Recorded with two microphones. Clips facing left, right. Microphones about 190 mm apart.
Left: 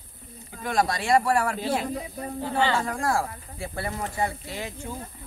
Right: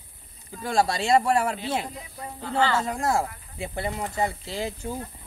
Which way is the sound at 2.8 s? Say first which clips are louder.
Right 1 dB; 20° right (ahead or behind).